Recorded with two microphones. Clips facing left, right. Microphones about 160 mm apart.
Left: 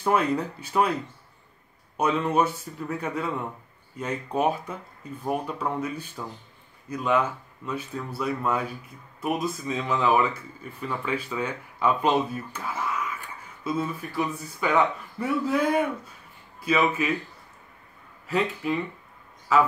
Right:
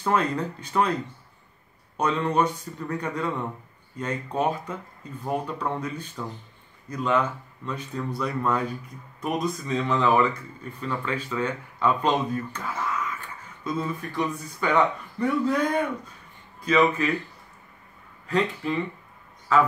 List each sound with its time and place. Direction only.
0.0 s speech: 10° left (ahead or behind)
2.0 s speech: 10° left (ahead or behind)
18.2 s a man's voice: 5° left (ahead or behind)